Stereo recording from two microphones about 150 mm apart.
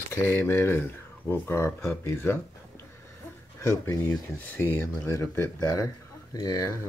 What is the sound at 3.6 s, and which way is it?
Speech, 20° left (ahead or behind).